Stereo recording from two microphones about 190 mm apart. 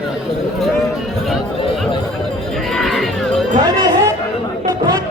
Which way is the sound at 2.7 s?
Centre (ahead or behind).